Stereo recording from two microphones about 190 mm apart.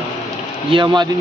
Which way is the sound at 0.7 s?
25° right (ahead or behind).